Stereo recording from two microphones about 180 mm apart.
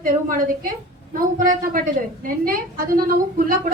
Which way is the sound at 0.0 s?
50° right (ahead or behind).